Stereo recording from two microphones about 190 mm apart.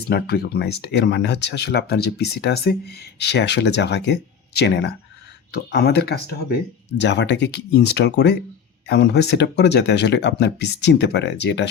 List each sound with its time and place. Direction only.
0.1 s speech: 55° left (ahead or behind)